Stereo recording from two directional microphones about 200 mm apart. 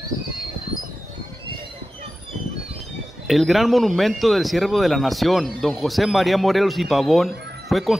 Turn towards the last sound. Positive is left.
turn(degrees=0)  # may be behind; listen again after turning